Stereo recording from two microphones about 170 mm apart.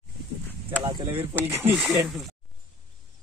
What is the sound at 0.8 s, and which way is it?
Speech, 25° right (ahead or behind).